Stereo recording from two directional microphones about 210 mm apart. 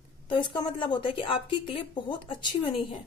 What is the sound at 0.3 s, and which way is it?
A woman's voice, 20° left (ahead or behind).